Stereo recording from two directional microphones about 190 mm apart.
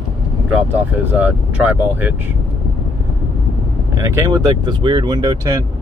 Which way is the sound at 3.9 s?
15° right (ahead or behind).